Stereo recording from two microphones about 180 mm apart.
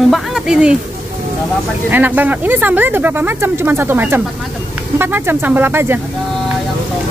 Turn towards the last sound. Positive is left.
turn(degrees=-10)  # may be behind; listen again after turning